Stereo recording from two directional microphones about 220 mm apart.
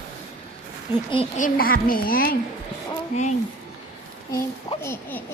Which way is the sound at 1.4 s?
40° left (ahead or behind).